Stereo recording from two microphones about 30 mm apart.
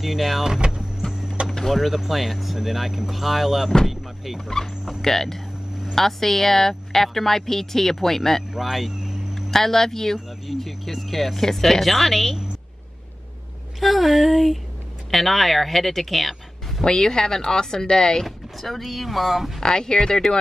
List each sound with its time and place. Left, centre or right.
0.0 s speech: centre
1.0 s music: left
1.7 s speech: centre
4.8 s speech: centre
8.5 s speech: centre
9.3 s speech: centre
10.6 s speech: centre
13.7 s speech: centre
16.8 s speech: left
18.2 s speech: centre
19.6 s speech: left